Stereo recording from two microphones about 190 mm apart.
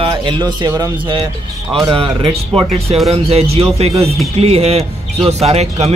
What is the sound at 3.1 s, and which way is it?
Speech, 30° right (ahead or behind).